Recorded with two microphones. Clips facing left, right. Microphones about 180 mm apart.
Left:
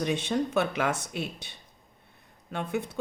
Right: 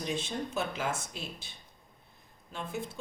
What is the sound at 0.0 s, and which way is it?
Speech, 65° left (ahead or behind).